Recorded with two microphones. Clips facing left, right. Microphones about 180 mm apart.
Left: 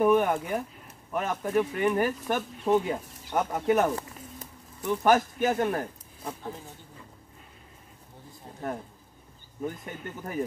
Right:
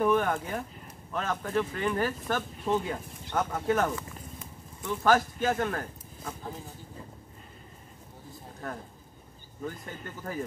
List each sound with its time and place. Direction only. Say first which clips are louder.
0.0 s speech: left 3 dB; 15° left (ahead or behind)
9.6 s speech: left 3 dB; 20° left (ahead or behind)